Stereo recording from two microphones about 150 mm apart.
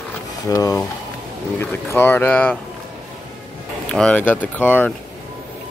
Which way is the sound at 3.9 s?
5° left (ahead or behind).